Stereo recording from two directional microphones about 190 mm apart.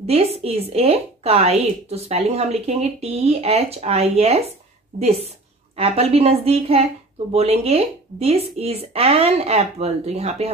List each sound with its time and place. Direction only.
0.0 s speech: 30° right (ahead or behind)